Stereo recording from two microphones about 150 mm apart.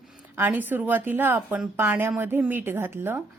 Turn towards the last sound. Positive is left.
turn(degrees=-15)  # may be behind; listen again after turning